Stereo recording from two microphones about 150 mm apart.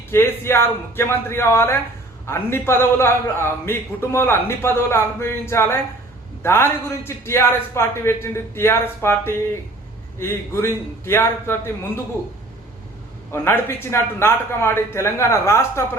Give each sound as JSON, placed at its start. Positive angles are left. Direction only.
{"t": 0.1, "sound": "a man's voice", "side_deg": 15}
{"t": 13.3, "sound": "a man's voice", "side_deg": 15}